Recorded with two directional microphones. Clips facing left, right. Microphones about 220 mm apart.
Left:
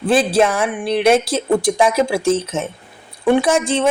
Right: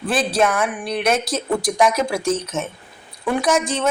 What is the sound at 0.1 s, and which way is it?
Speech, 30° left (ahead or behind).